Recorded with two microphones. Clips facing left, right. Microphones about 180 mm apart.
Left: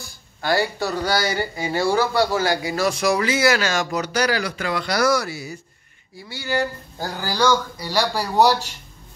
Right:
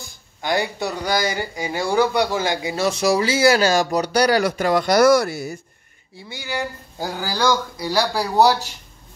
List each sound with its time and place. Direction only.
0.4 s speech: 20° right (ahead or behind); by 5.6 s 50° right (ahead or behind)
6.1 s speech: 15° right (ahead or behind)